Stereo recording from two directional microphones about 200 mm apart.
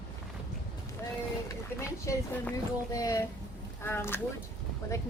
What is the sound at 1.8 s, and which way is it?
Speech, 15° left (ahead or behind).